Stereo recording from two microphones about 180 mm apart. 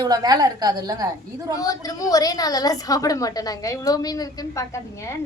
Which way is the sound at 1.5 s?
20° left (ahead or behind).